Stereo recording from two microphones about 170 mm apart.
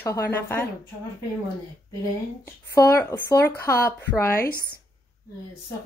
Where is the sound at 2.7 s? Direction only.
15° left (ahead or behind).